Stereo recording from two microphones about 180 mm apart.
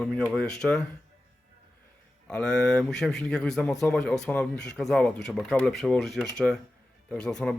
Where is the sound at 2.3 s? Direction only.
5° left (ahead or behind).